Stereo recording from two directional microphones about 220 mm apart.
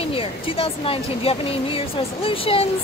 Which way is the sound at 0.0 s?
25° left (ahead or behind).